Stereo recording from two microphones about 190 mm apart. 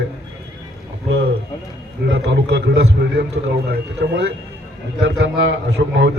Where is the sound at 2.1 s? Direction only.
65° right (ahead or behind).